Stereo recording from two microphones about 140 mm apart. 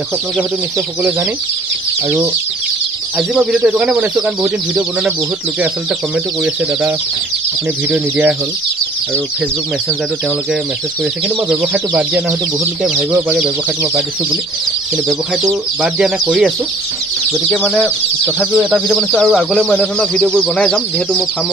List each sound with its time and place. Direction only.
3.2 s speech: 5° right (ahead or behind)
7.9 s speech: 10° right (ahead or behind)
11.2 s speech: 5° right (ahead or behind)
15.8 s speech: 5° right (ahead or behind)